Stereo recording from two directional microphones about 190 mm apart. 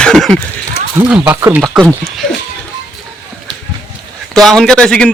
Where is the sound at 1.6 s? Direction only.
Centre (ahead or behind).